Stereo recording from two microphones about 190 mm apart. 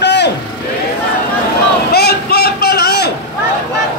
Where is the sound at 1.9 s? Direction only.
55° left (ahead or behind).